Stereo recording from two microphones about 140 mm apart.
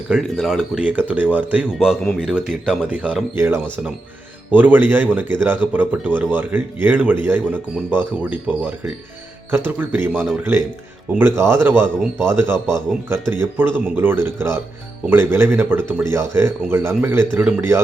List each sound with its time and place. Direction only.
0.1 s a man's voice: centre (ahead or behind); by 17.7 s 15° right (ahead or behind)